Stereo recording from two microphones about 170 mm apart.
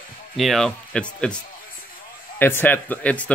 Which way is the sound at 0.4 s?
Centre (ahead or behind).